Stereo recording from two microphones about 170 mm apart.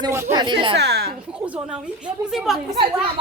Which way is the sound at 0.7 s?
75° right (ahead or behind).